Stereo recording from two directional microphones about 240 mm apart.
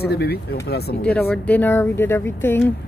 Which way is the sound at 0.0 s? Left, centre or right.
Left.